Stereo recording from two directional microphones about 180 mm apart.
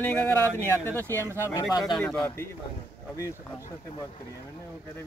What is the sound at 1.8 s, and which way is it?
Speech, centre (ahead or behind).